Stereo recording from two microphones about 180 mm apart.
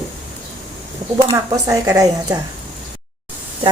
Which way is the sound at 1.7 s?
20° right (ahead or behind).